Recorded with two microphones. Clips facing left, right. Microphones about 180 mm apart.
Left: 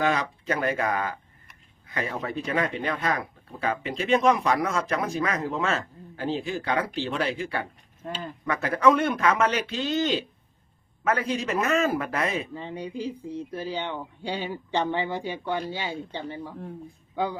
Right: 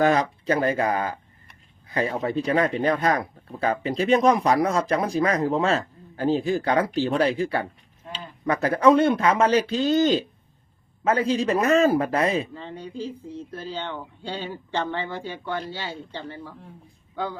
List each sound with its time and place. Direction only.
0.0 s speech: 40° right (ahead or behind)
8.0 s a sound: 45° left (ahead or behind)
8.4 s speech: 35° right (ahead or behind)
11.0 s speech: 30° right (ahead or behind)
12.5 s speech: 15° left (ahead or behind)